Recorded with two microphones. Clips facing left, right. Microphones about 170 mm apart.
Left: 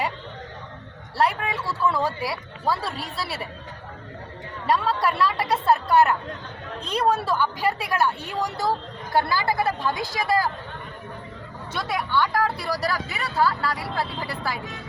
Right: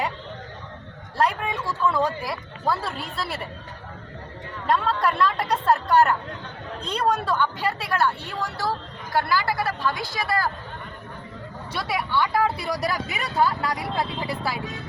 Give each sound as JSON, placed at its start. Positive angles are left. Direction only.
{"t": 1.2, "sound": "speech", "side_deg": 5}
{"t": 4.6, "sound": "speech", "side_deg": 5}
{"t": 11.7, "sound": "speech", "side_deg": -5}
{"t": 12.6, "sound": "speech", "side_deg": -15}